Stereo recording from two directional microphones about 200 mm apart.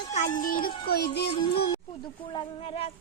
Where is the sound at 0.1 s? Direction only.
40° left (ahead or behind).